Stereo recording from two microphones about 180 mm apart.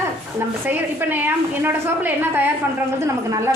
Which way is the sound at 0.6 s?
10° right (ahead or behind).